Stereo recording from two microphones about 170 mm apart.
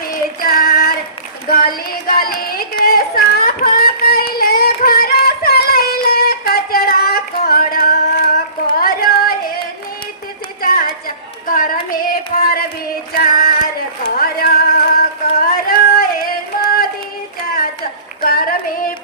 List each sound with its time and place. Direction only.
0.3 s female singing: 60° left (ahead or behind)
1.5 s a sound: 60° left (ahead or behind)
10.6 s a sound: 60° left (ahead or behind)
13.1 s female singing: 60° left (ahead or behind)
14.2 s music: 60° left (ahead or behind)
18.2 s clapping: 60° left (ahead or behind)